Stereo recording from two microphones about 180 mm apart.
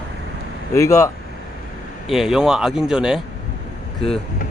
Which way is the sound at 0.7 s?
15° left (ahead or behind).